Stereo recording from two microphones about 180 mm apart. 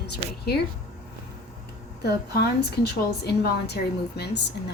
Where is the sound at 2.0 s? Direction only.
65° left (ahead or behind).